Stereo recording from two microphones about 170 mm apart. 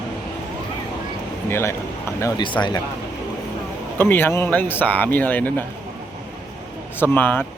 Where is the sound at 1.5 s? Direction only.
15° left (ahead or behind).